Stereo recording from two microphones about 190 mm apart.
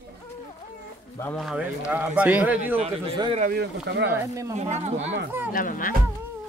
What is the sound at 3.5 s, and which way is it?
Speech, 60° right (ahead or behind).